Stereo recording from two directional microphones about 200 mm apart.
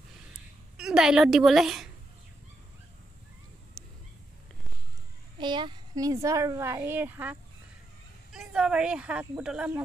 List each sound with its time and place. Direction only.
0.7 s a woman's voice: 5° right (ahead or behind)
3.8 s a sound: 5° left (ahead or behind)
5.4 s a woman's voice: 25° right (ahead or behind); by 9.8 s 5° right (ahead or behind)